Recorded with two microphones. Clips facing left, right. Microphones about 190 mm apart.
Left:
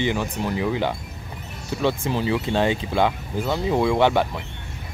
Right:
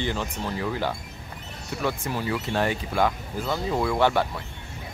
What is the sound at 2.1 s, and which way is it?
Speech, 20° left (ahead or behind).